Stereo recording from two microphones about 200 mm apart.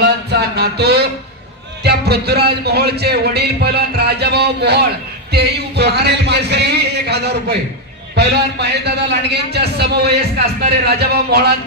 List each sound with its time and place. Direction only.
0.3 s music: 55° right (ahead or behind)
1.8 s a man's voice: 55° right (ahead or behind)